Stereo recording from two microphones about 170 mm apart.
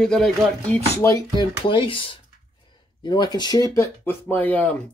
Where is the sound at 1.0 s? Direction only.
20° left (ahead or behind).